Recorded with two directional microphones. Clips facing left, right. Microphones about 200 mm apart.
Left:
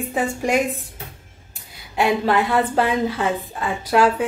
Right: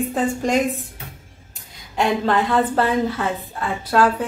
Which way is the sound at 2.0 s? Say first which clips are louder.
Left 1 dB; 10° left (ahead or behind).